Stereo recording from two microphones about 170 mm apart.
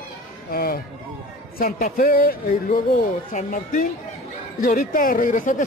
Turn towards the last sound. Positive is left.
turn(degrees=50)  # may be behind; listen again after turning